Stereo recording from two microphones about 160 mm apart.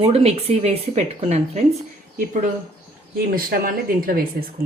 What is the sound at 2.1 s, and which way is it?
Speech, 55° right (ahead or behind).